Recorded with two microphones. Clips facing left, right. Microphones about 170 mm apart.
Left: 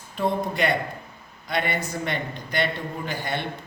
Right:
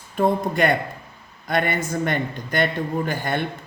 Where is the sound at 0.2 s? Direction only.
50° right (ahead or behind).